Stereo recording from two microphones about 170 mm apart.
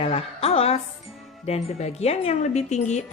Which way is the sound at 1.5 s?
40° left (ahead or behind).